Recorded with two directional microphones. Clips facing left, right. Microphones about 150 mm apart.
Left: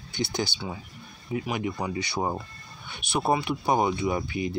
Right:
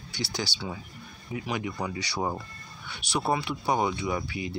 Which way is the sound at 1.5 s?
20° left (ahead or behind).